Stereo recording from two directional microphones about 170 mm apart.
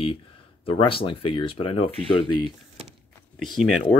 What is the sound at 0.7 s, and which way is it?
Speech, 30° left (ahead or behind).